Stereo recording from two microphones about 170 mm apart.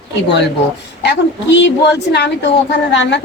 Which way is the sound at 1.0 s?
90° left.